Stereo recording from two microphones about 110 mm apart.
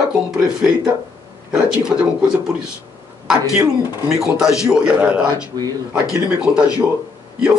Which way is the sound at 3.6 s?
25° right (ahead or behind).